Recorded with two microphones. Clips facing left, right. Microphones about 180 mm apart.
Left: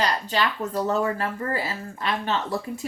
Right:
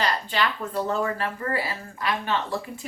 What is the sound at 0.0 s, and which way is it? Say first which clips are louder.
Speech: left 1 dB; 40° left (ahead or behind).